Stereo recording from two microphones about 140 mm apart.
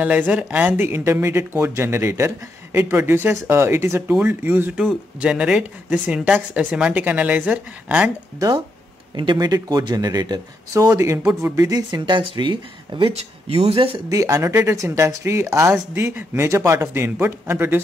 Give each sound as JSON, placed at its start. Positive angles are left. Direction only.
{"t": 0.0, "sound": "speech", "side_deg": -10}
{"t": 8.4, "sound": "speech", "side_deg": -30}
{"t": 13.1, "sound": "speech", "side_deg": -50}
{"t": 14.1, "sound": "speech", "side_deg": -20}